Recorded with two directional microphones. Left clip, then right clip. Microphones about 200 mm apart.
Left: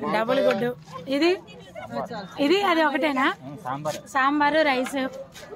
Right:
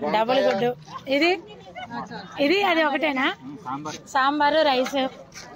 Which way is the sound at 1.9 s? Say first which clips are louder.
Left 5 dB; 60° left (ahead or behind).